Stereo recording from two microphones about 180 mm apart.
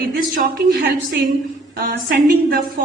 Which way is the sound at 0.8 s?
70° right (ahead or behind).